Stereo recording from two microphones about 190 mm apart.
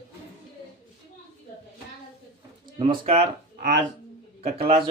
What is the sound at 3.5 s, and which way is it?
Speech, 55° right (ahead or behind).